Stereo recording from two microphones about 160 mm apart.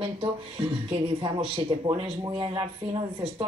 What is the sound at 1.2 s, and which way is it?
Speech, 30° right (ahead or behind).